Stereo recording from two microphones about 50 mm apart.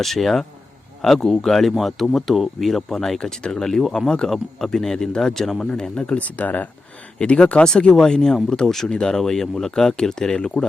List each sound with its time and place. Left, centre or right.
0.0 s speech: centre
6.1 s speech: left
7.2 s speech: left